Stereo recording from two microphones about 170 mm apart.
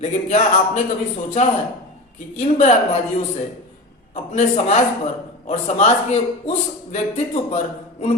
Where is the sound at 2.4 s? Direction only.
45° left (ahead or behind).